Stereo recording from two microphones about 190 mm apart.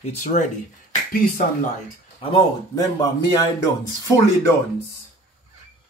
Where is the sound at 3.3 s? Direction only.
15° left (ahead or behind).